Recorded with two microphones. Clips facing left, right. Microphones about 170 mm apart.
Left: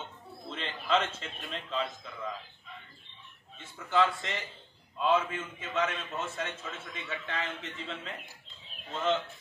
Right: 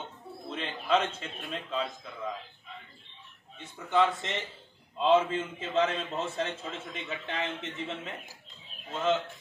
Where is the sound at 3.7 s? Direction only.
20° right (ahead or behind).